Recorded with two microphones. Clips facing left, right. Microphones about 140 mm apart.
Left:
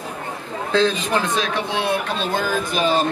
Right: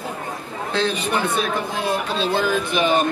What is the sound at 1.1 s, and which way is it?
Speech, 90° left.